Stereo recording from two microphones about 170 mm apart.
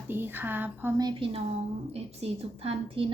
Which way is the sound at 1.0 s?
30° right (ahead or behind).